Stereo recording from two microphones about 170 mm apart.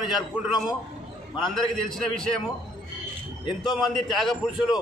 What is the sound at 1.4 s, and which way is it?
Speech, centre (ahead or behind).